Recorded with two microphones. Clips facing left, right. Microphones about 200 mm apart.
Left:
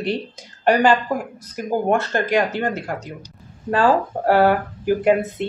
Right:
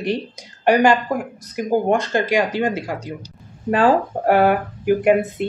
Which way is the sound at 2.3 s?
10° right (ahead or behind).